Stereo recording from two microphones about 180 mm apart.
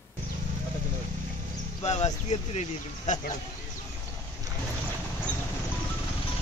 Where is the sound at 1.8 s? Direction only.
40° left (ahead or behind).